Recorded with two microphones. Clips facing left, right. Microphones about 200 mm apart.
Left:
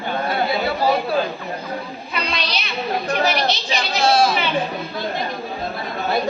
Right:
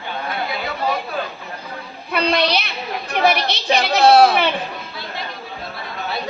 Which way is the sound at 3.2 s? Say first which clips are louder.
Right 3 dB; 60° right (ahead or behind).